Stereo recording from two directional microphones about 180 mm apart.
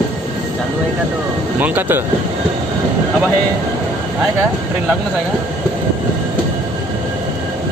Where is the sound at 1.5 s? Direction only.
10° right (ahead or behind).